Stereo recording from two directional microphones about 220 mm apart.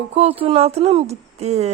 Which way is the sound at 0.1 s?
30° right (ahead or behind).